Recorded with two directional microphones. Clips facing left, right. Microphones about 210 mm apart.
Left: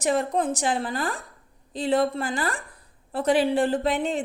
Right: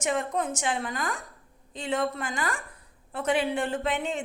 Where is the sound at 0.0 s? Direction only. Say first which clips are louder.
Left 5 dB; 35° left (ahead or behind).